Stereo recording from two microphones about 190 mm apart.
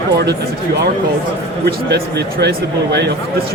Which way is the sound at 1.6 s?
60° right (ahead or behind).